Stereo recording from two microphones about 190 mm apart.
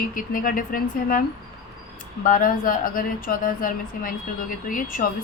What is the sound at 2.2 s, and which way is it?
Speech, 45° left (ahead or behind).